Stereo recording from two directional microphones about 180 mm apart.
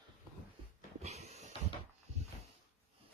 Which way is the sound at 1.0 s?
40° right (ahead or behind).